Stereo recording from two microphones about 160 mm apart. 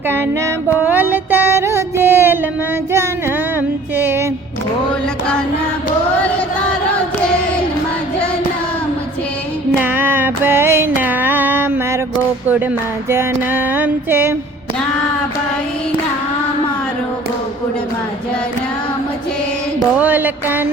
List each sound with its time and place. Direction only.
0.1 s music: 10° right (ahead or behind)
2.9 s child singing: 15° right (ahead or behind)
3.9 s music: 10° right (ahead or behind)
9.8 s music: 10° right (ahead or behind)
11.0 s a sound: 10° right (ahead or behind)
13.1 s music: 15° right (ahead or behind)
20.0 s music: 10° right (ahead or behind)